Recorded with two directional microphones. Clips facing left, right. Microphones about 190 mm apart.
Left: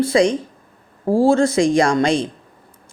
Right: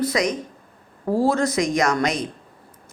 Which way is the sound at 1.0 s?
30° left (ahead or behind).